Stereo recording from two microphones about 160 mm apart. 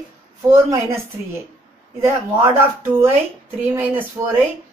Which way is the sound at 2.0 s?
20° right (ahead or behind).